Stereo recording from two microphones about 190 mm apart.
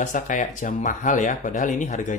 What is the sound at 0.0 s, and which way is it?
Speech, 40° left (ahead or behind).